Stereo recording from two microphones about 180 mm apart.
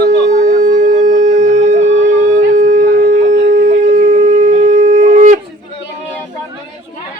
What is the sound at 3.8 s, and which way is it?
Shofar, 45° right (ahead or behind).